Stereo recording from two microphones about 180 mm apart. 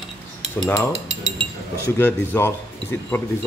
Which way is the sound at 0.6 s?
Centre (ahead or behind).